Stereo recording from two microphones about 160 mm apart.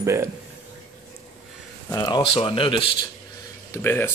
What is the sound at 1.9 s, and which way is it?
Speech, 25° left (ahead or behind).